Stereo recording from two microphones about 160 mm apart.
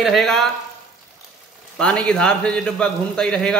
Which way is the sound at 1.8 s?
5° left (ahead or behind).